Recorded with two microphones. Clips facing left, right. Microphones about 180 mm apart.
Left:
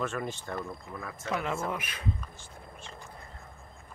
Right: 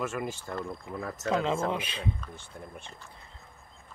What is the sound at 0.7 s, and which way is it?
Speech, 25° right (ahead or behind).